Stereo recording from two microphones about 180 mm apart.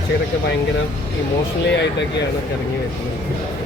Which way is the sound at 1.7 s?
75° left (ahead or behind).